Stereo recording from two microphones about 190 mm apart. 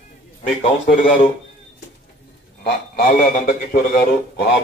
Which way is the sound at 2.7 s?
50° left (ahead or behind).